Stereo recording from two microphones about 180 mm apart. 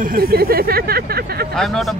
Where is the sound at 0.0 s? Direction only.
55° right (ahead or behind).